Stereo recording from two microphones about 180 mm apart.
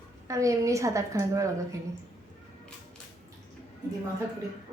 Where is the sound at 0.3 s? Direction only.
15° right (ahead or behind).